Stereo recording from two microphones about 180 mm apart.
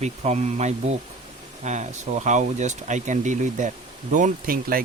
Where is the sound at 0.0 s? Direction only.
40° right (ahead or behind).